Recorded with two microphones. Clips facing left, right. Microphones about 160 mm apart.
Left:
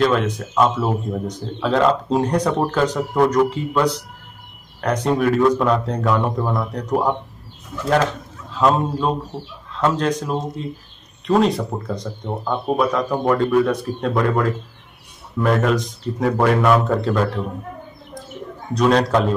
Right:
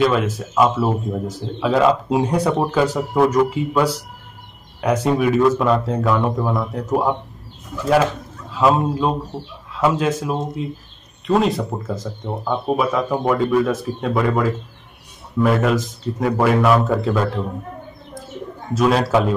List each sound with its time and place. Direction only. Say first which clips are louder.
0.0 s speech: even; 5° right (ahead or behind)
18.8 s speech: even; 5° right (ahead or behind)